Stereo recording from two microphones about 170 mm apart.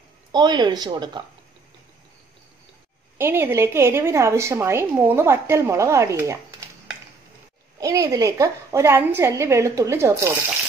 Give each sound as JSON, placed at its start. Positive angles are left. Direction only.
{"t": 0.3, "sound": "speech", "side_deg": -25}
{"t": 3.2, "sound": "a woman's voice", "side_deg": -15}
{"t": 7.8, "sound": "a woman's voice", "side_deg": -20}